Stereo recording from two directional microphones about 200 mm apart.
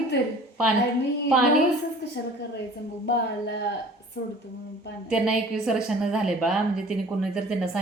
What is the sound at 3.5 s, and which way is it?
Speech, 55° left (ahead or behind).